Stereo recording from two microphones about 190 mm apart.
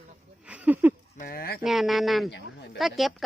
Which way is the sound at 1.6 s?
Centre (ahead or behind).